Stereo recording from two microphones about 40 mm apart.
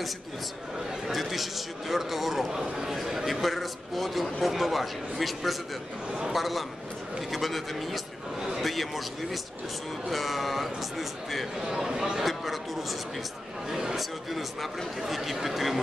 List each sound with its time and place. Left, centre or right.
1.0 s a man's voice: centre
11.7 s speech: centre
12.2 s a sound: centre
13.7 s a man's voice: centre